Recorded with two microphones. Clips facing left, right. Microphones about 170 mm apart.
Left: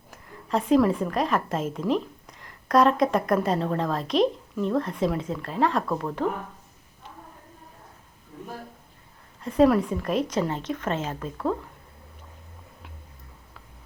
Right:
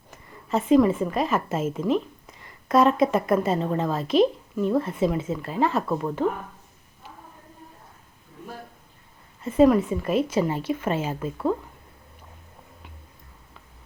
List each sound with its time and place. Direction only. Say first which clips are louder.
0.1 s a woman's voice: right 1 dB; centre (ahead or behind)
9.4 s a woman's voice: right 2 dB; 5° right (ahead or behind)